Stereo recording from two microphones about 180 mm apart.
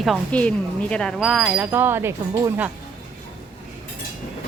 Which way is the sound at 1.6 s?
15° right (ahead or behind).